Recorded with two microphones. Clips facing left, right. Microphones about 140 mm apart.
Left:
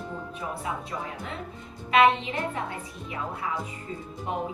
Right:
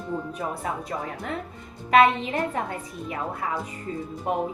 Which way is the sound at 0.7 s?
45° right (ahead or behind).